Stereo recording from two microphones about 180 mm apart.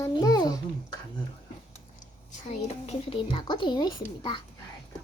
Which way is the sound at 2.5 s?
35° left (ahead or behind).